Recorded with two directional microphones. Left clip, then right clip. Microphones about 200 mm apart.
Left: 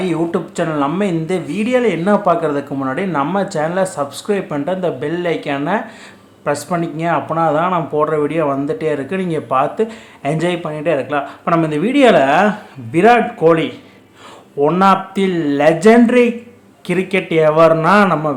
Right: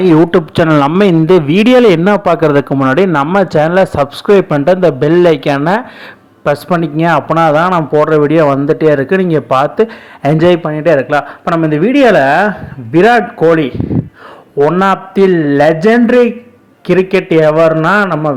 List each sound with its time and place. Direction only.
0.0 s a man's voice: 40° right (ahead or behind); by 18.3 s 15° right (ahead or behind)